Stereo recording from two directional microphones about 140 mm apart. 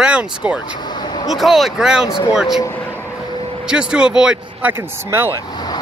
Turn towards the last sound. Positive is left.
turn(degrees=30)  # may be behind; listen again after turning